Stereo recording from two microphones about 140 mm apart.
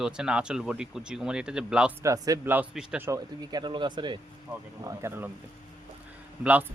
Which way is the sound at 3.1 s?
30° right (ahead or behind).